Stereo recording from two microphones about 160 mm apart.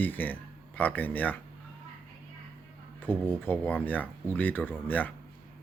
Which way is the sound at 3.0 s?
10° left (ahead or behind).